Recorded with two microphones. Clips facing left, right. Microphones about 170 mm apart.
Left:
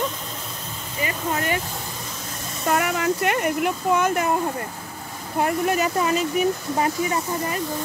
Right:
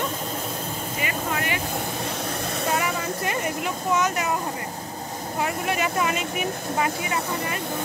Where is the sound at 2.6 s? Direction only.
65° left (ahead or behind).